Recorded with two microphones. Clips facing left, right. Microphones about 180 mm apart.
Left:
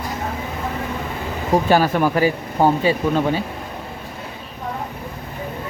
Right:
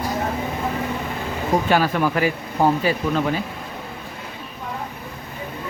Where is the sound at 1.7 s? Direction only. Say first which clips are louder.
Left 4 dB; 40° left (ahead or behind).